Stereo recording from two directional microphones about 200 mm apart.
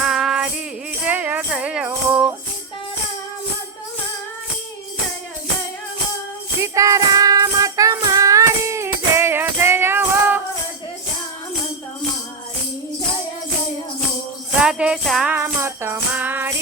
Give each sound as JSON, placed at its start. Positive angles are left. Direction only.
{"t": 0.0, "sound": "music", "side_deg": 0}
{"t": 6.6, "sound": "music", "side_deg": -15}
{"t": 14.6, "sound": "music", "side_deg": -5}